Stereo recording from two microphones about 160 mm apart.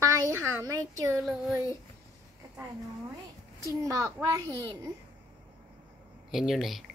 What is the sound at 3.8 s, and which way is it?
Speech, 20° right (ahead or behind).